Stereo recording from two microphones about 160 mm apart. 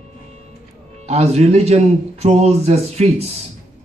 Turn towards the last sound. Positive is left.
turn(degrees=-40)  # may be behind; listen again after turning